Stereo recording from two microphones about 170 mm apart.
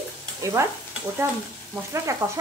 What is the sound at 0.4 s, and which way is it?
Stir, 15° right (ahead or behind).